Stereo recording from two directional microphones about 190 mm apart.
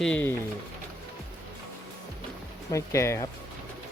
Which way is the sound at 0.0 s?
10° left (ahead or behind).